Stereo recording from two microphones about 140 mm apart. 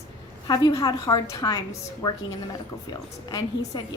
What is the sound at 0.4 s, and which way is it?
A woman's voice, 30° left (ahead or behind).